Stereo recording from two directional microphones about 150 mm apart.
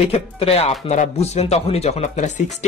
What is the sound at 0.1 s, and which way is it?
Speech, 40° left (ahead or behind).